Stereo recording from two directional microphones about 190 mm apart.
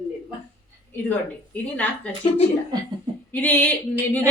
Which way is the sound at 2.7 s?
20° right (ahead or behind).